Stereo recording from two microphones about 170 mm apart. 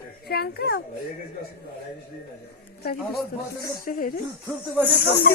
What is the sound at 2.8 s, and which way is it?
Speech, 65° left (ahead or behind).